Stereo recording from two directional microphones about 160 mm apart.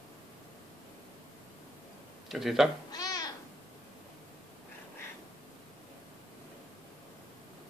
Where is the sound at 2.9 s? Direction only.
25° left (ahead or behind).